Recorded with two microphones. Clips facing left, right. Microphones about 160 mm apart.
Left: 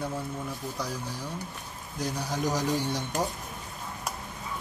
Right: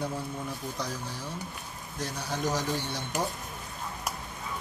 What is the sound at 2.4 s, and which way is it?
Speech, 15° left (ahead or behind).